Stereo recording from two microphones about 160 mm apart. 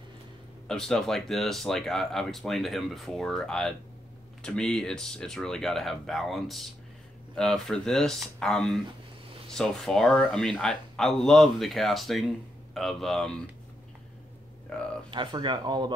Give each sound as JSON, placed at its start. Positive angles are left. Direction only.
{"t": 0.7, "sound": "speech", "side_deg": 5}
{"t": 14.7, "sound": "speech", "side_deg": 5}
{"t": 15.0, "sound": "speech", "side_deg": -30}